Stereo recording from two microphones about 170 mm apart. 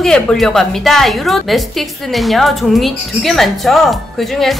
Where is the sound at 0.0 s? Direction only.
5° left (ahead or behind).